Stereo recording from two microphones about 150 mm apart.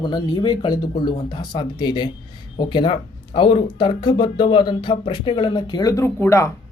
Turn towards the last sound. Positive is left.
turn(degrees=20)  # may be behind; listen again after turning